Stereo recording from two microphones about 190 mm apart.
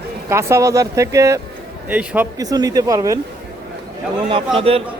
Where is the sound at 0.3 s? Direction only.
15° right (ahead or behind).